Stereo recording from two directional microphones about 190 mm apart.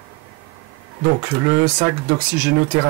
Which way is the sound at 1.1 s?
20° right (ahead or behind).